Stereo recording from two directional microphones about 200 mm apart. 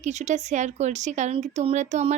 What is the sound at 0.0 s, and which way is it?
Speech, 35° right (ahead or behind).